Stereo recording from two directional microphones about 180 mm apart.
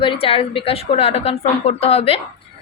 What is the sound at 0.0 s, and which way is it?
A woman's voice, 30° left (ahead or behind).